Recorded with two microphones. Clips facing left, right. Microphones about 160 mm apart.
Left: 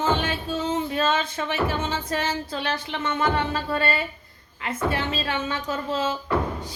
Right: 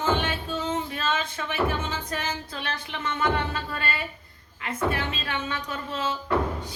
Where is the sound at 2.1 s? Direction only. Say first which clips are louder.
Left 5 dB; 30° left (ahead or behind).